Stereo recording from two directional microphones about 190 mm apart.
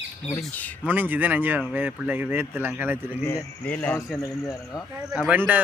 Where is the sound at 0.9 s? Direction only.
10° right (ahead or behind).